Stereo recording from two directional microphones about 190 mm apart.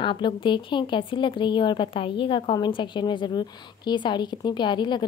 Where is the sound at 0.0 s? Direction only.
25° left (ahead or behind).